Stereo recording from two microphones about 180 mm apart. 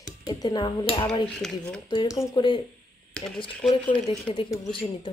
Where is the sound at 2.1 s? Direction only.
20° left (ahead or behind).